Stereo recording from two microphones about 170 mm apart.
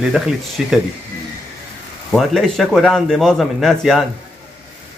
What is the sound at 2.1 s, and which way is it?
Speech, centre (ahead or behind).